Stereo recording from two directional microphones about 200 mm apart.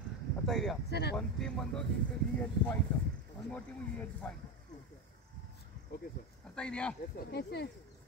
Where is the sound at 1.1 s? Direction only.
5° left (ahead or behind).